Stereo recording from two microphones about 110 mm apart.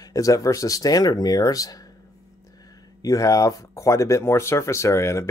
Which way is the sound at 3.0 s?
30° left (ahead or behind).